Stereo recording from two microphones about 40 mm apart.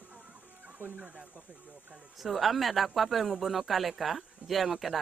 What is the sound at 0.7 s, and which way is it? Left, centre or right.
Speech, right.